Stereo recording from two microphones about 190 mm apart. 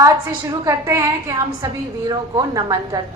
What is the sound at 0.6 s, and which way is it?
A woman's voice, 15° right (ahead or behind).